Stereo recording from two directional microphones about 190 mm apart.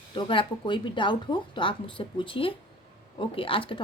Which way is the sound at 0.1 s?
25° left (ahead or behind).